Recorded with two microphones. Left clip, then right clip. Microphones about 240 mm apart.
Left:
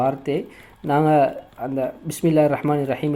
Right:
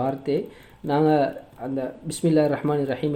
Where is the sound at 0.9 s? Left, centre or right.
Left.